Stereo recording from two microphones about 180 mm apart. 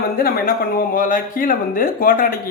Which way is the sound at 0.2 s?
55° left (ahead or behind).